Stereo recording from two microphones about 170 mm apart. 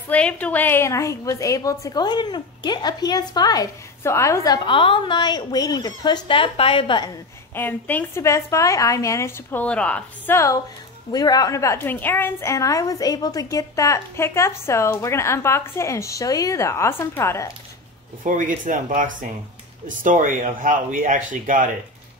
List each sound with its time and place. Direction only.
0.1 s a woman's voice: 5° left (ahead or behind)
4.6 s a woman's voice: 30° left (ahead or behind)
7.5 s a woman's voice: 10° left (ahead or behind)
18.2 s speech: 50° right (ahead or behind)